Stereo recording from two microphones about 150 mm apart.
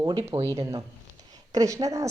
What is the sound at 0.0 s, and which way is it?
Speech, 25° right (ahead or behind).